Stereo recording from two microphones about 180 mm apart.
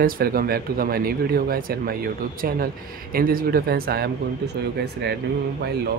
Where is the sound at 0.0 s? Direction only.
55° right (ahead or behind).